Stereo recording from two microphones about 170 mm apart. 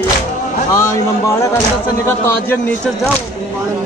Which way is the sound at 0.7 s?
20° left (ahead or behind).